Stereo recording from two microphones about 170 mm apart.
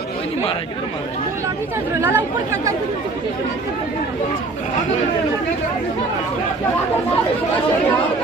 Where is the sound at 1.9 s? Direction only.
15° right (ahead or behind).